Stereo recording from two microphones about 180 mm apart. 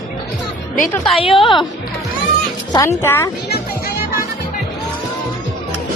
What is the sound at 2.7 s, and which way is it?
Speech, 15° left (ahead or behind).